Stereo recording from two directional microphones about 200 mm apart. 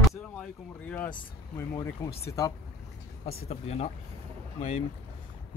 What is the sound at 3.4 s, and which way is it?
Speech, 35° left (ahead or behind).